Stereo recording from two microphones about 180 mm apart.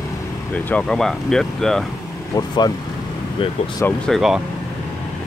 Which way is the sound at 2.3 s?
25° left (ahead or behind).